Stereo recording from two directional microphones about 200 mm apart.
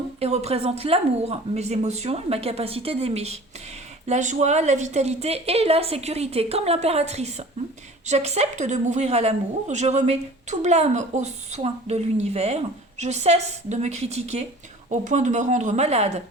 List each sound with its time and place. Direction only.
0.2 s a woman's voice: 30° right (ahead or behind)